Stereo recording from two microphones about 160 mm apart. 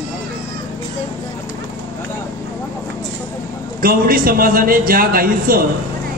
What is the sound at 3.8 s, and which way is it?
A man's voice, 65° right (ahead or behind).